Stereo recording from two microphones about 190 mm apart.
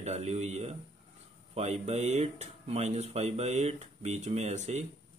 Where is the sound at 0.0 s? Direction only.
35° right (ahead or behind).